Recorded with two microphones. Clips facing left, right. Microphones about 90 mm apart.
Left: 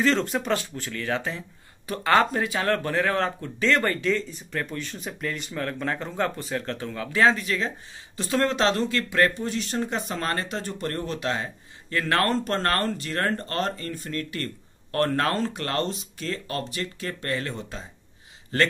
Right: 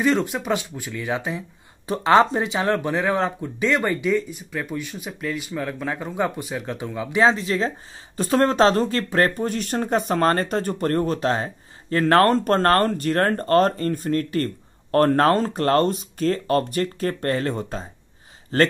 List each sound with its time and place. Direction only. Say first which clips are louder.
0.0 s speech: right 2 dB; 10° right (ahead or behind); by 7.7 s 30° right (ahead or behind)
8.2 s speech: right 6 dB; 40° right (ahead or behind)